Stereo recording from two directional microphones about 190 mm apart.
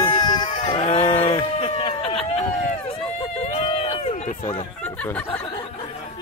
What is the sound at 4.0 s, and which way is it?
Run, 35° left (ahead or behind).